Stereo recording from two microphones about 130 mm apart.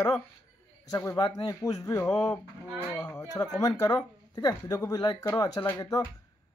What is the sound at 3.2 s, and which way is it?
Speech, 30° left (ahead or behind).